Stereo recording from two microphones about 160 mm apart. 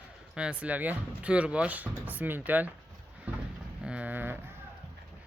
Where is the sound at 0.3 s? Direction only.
5° right (ahead or behind).